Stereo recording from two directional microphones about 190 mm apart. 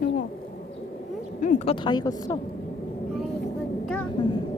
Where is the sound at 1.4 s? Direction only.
40° left (ahead or behind).